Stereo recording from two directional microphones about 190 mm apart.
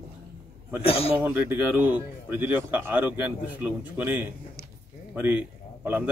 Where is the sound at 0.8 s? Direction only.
30° left (ahead or behind).